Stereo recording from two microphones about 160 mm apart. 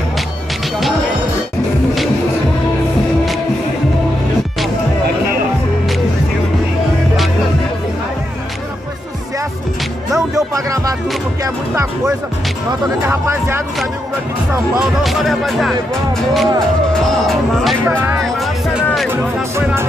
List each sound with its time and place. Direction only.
10.3 s music: 20° right (ahead or behind)
13.0 s speech: 15° right (ahead or behind)
15.0 s music: centre (ahead or behind)
19.0 s speech: 15° right (ahead or behind)